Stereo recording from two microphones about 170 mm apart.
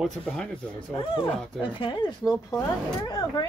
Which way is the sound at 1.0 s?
30° left (ahead or behind).